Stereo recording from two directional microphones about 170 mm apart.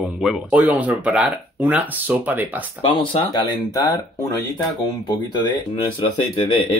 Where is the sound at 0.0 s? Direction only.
Centre (ahead or behind).